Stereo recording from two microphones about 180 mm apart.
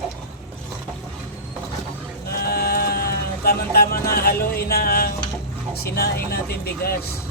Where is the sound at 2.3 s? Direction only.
60° left (ahead or behind).